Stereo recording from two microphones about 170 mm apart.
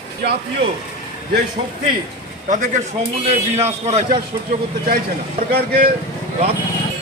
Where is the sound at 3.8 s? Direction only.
40° right (ahead or behind).